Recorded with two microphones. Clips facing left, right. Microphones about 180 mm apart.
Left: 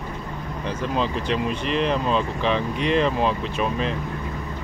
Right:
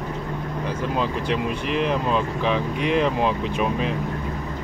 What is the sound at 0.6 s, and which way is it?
Speech, 10° right (ahead or behind).